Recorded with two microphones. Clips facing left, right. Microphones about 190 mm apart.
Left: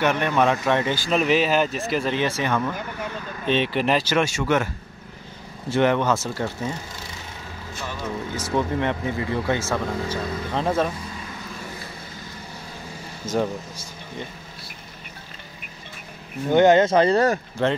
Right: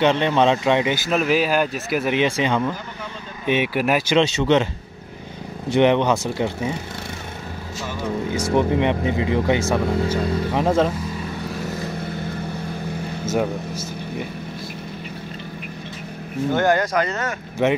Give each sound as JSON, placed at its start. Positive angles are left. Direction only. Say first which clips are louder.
{"t": 0.0, "sound": "speech", "louder": "right 3 dB", "side_deg": -25}
{"t": 1.1, "sound": "speech", "louder": "even", "side_deg": -5}
{"t": 4.2, "sound": "speech", "louder": "right 4 dB", "side_deg": -20}
{"t": 5.7, "sound": "speech", "louder": "right 3 dB", "side_deg": -20}
{"t": 8.3, "sound": "speech", "louder": "right 5 dB", "side_deg": -15}
{"t": 16.5, "sound": "speech", "louder": "left 5 dB", "side_deg": 20}
{"t": 17.6, "sound": "speech", "louder": "right 4 dB", "side_deg": -15}